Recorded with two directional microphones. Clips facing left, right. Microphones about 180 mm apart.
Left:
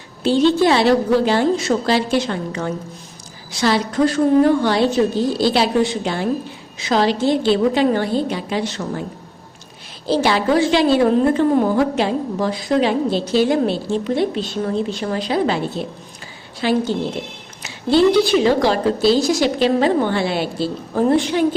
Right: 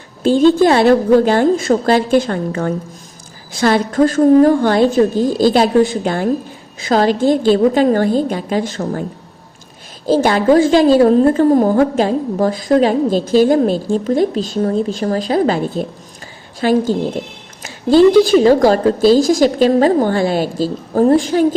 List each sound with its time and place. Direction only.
0.2 s a woman's voice: 50° right (ahead or behind)
10.1 s a woman's voice: 45° right (ahead or behind)